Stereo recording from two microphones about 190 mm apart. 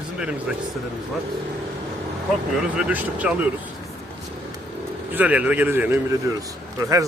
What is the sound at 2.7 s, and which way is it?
Speech, 5° right (ahead or behind).